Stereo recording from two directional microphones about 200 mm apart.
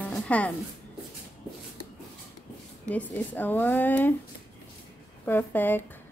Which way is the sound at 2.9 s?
10° left (ahead or behind).